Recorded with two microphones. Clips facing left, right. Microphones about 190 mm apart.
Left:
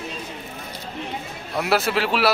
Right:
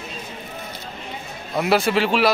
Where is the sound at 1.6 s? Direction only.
5° left (ahead or behind).